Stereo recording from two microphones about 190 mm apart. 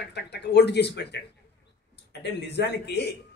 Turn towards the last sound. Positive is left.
turn(degrees=60)  # may be behind; listen again after turning